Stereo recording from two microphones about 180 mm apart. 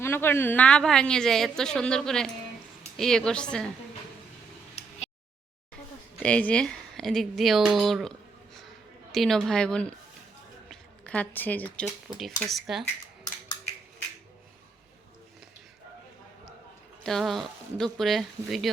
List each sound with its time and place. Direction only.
0.0 s a woman's voice: 15° left (ahead or behind)
4.8 s a sound: 35° left (ahead or behind)
6.2 s a woman's voice: 5° left (ahead or behind)
9.1 s a woman's voice: centre (ahead or behind)
17.0 s a woman's voice: centre (ahead or behind)